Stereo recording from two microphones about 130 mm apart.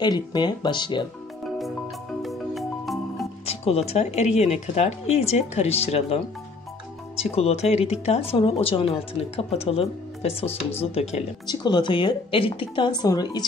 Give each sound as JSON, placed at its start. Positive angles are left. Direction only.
{"t": 0.0, "sound": "a woman's voice", "side_deg": 35}
{"t": 2.2, "sound": "music", "side_deg": 0}
{"t": 3.4, "sound": "speech", "side_deg": 50}
{"t": 11.4, "sound": "a woman's voice", "side_deg": 35}